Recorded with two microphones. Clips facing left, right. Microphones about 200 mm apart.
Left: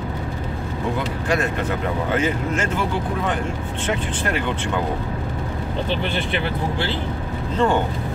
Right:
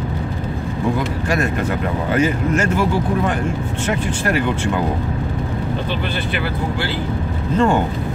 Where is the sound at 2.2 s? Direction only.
10° right (ahead or behind).